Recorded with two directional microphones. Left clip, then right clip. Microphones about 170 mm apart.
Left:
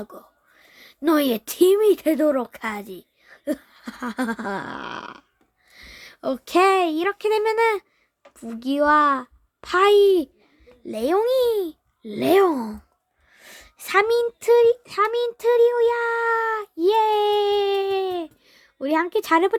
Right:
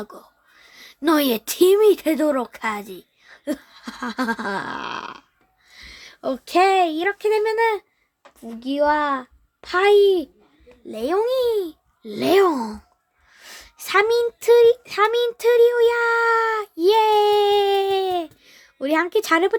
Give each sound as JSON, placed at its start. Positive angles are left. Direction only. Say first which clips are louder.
{"t": 0.0, "sound": "a woman's voice", "louder": "right 2 dB", "side_deg": 5}